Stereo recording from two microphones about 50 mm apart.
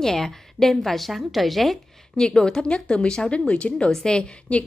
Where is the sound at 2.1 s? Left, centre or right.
Centre.